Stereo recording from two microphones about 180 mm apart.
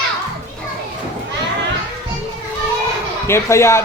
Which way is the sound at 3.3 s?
15° left (ahead or behind).